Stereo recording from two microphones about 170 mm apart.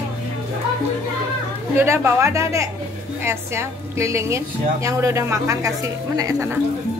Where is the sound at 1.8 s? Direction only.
15° right (ahead or behind).